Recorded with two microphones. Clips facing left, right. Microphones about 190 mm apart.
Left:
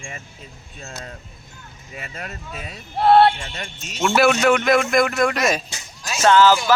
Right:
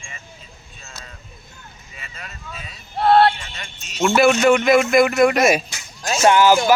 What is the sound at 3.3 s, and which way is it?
Speech, 50° left (ahead or behind).